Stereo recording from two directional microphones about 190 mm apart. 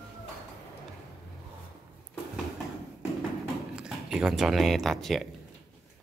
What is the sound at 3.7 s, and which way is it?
Speech, 5° right (ahead or behind).